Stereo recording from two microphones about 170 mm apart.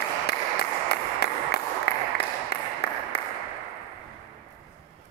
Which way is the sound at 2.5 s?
70° left (ahead or behind).